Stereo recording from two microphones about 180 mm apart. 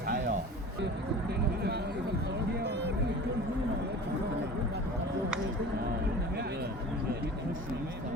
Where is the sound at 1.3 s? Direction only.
65° right (ahead or behind).